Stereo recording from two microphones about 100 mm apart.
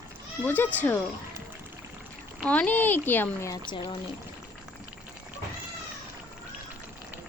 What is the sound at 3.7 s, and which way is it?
Speech, 55° left (ahead or behind).